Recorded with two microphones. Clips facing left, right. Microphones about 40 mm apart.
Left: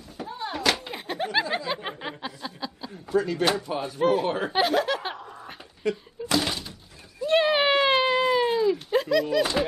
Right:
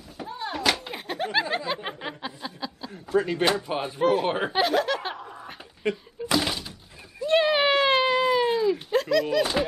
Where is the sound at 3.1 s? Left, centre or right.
Right.